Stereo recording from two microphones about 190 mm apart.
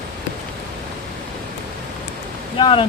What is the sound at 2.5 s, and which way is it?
Speech, 25° left (ahead or behind).